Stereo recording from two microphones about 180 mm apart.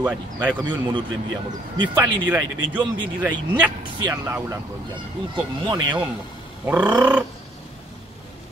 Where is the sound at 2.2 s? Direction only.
10° right (ahead or behind).